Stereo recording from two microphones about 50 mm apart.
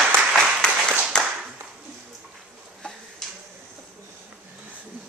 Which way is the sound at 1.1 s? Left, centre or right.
Centre.